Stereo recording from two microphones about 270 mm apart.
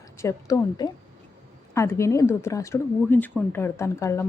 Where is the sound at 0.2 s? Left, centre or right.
Centre.